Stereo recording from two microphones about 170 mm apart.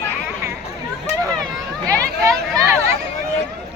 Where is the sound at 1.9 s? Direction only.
20° right (ahead or behind).